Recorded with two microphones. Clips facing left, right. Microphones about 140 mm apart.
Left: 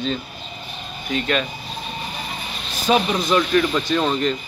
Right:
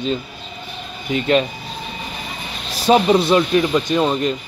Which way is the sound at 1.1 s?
20° right (ahead or behind).